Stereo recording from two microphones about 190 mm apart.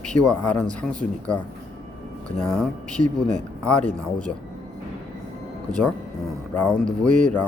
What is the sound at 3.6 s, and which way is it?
Speech, 5° left (ahead or behind).